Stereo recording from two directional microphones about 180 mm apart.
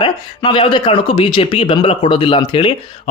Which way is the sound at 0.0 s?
25° left (ahead or behind).